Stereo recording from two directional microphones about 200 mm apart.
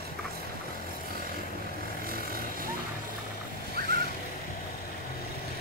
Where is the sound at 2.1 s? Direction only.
45° right (ahead or behind).